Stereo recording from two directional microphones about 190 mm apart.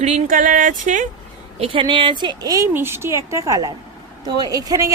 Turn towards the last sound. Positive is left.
turn(degrees=-20)  # may be behind; listen again after turning